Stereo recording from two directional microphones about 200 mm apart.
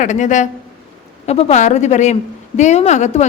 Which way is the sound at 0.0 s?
40° left (ahead or behind).